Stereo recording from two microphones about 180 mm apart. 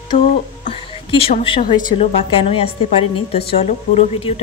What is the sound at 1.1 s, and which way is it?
A woman's voice, 35° left (ahead or behind).